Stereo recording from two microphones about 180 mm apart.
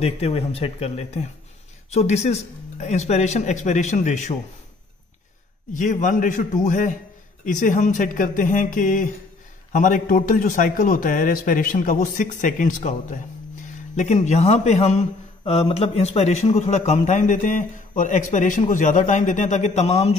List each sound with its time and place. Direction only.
0.0 s a man's voice: 35° left (ahead or behind)
5.7 s a man's voice: 45° left (ahead or behind)